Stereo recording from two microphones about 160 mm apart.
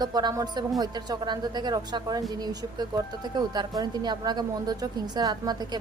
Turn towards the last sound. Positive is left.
turn(degrees=-25)  # may be behind; listen again after turning